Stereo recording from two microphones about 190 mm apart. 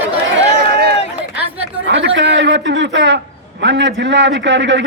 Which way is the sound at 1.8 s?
70° right (ahead or behind).